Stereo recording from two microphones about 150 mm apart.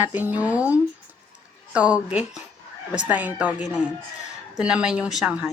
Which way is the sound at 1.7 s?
5° right (ahead or behind).